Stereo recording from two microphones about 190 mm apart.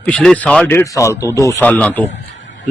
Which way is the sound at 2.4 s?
80° left.